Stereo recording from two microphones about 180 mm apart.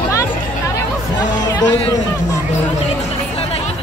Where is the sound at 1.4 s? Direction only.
25° left (ahead or behind).